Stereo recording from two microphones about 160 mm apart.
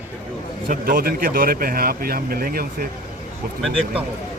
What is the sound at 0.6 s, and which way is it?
Speech, 65° right (ahead or behind).